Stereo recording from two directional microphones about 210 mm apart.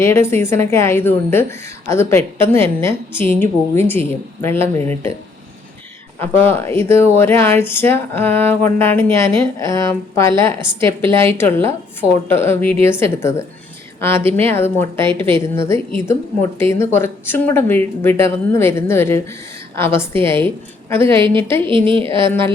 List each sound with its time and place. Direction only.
0.0 s a woman's voice: 10° left (ahead or behind)
6.1 s a woman's voice: 10° left (ahead or behind)
21.0 s a woman's voice: 25° right (ahead or behind)